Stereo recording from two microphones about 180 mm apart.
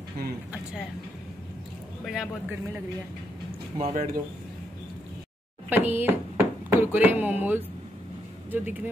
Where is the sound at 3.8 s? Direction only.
50° right (ahead or behind).